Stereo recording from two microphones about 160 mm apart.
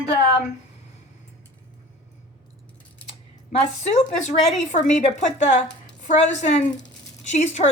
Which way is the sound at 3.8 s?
45° left (ahead or behind).